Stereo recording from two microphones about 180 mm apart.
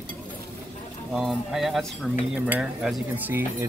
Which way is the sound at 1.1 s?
Centre (ahead or behind).